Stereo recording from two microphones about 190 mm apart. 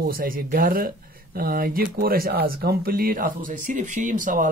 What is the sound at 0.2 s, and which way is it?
Speech, 50° right (ahead or behind).